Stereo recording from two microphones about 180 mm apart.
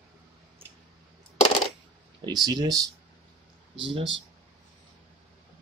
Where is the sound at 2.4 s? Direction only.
20° right (ahead or behind).